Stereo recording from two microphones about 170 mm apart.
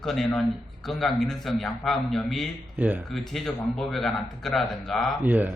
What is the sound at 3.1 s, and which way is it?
Speech, centre (ahead or behind).